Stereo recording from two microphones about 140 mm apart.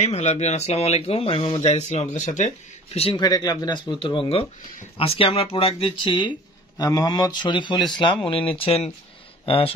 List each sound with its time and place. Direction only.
0.0 s speech: 50° left (ahead or behind)
3.2 s speech: 30° left (ahead or behind); by 8.9 s 45° left (ahead or behind)